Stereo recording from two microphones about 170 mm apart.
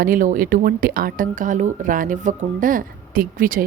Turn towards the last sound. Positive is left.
turn(degrees=-55)  # may be behind; listen again after turning